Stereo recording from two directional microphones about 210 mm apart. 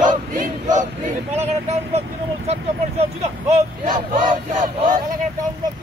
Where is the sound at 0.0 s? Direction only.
35° right (ahead or behind).